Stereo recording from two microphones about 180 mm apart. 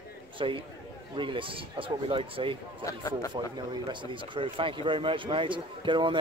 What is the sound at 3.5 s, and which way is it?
Speech, 25° right (ahead or behind).